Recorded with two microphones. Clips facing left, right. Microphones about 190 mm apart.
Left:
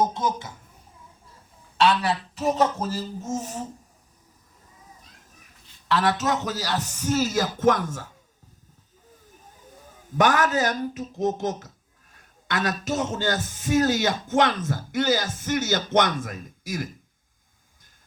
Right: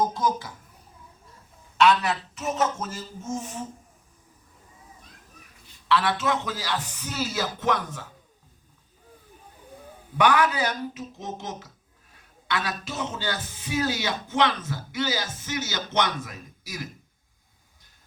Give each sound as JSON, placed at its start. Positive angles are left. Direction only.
{"t": 0.0, "sound": "a woman's voice", "side_deg": 25}
{"t": 1.8, "sound": "speech", "side_deg": 30}
{"t": 5.9, "sound": "speech", "side_deg": 40}
{"t": 10.1, "sound": "speech", "side_deg": 45}